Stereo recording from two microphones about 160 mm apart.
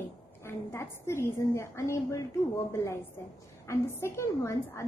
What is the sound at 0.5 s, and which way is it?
A woman's voice, 15° left (ahead or behind).